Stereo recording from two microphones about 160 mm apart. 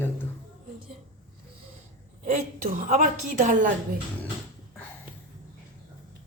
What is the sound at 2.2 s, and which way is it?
A woman's voice, 45° right (ahead or behind).